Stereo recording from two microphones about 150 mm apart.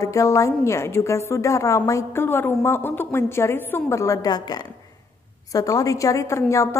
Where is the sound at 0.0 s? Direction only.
20° left (ahead or behind).